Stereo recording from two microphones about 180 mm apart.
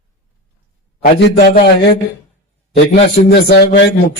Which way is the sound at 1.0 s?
60° left (ahead or behind).